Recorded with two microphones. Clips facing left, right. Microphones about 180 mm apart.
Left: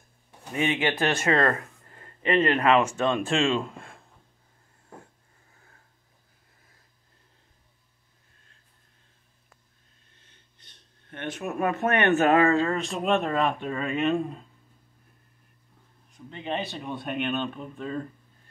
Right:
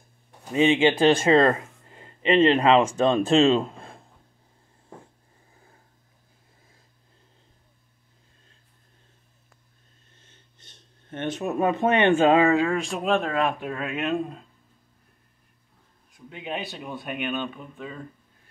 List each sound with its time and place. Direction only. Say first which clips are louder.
0.5 s speech: right 7 dB; 25° right (ahead or behind)
10.6 s speech: right 5 dB; 25° right (ahead or behind); by 14.4 s centre (ahead or behind)
16.3 s speech: left 1 dB; 10° right (ahead or behind)